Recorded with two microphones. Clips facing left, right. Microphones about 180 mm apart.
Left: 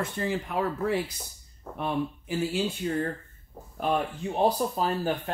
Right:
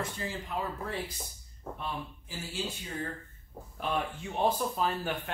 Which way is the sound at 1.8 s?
60° left (ahead or behind).